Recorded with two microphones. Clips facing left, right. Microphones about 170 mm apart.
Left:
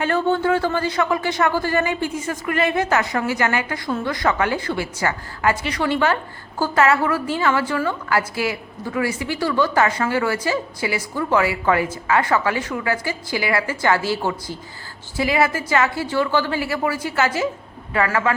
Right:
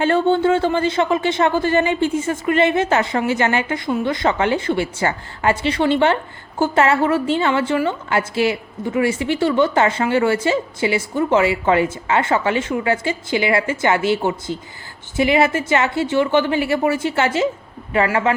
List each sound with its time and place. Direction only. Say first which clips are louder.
0.0 s a woman's voice: right 4 dB; 25° right (ahead or behind)